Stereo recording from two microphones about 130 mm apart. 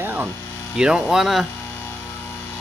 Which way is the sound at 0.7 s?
5° right (ahead or behind).